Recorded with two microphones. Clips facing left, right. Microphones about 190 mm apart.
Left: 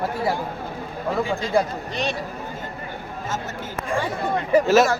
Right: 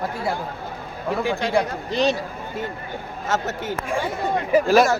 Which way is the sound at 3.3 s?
70° right (ahead or behind).